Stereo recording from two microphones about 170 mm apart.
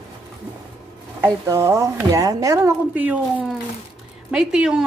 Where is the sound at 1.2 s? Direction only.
15° right (ahead or behind).